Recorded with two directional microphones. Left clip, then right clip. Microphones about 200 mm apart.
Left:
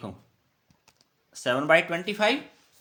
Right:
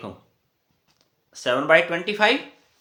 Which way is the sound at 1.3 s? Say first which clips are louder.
Right 4 dB; 25° left (ahead or behind).